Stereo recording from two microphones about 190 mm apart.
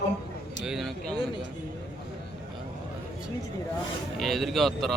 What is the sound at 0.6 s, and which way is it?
Speech, centre (ahead or behind).